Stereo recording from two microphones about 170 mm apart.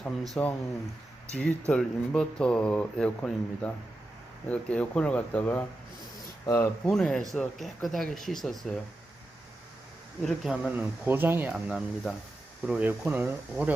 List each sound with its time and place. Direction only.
0.4 s speech: 5° left (ahead or behind)
6.9 s speech: centre (ahead or behind)
10.2 s speech: centre (ahead or behind)